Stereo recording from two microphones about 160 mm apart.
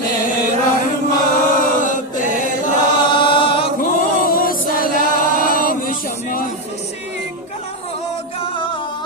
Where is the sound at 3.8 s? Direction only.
65° left (ahead or behind).